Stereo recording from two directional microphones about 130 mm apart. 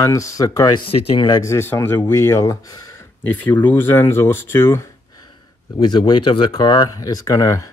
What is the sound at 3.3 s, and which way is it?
Speech, 15° left (ahead or behind).